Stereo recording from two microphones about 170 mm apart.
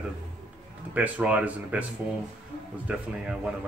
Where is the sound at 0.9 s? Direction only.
10° right (ahead or behind).